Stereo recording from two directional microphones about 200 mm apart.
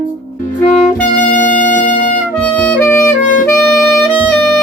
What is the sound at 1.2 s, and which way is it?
Music, 40° left (ahead or behind).